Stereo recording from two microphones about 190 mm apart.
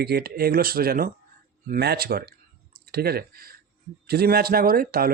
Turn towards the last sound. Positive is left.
turn(degrees=-50)  # may be behind; listen again after turning